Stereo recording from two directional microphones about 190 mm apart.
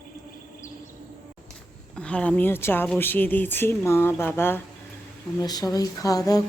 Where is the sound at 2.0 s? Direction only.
5° left (ahead or behind).